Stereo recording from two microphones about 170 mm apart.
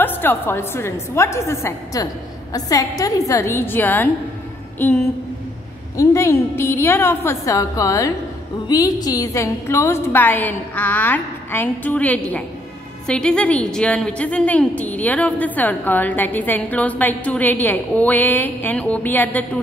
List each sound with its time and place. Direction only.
0.0 s a woman's voice: 10° left (ahead or behind)